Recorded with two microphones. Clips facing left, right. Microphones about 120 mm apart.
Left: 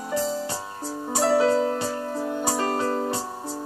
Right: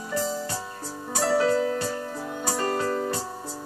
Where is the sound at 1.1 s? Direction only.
25° left (ahead or behind).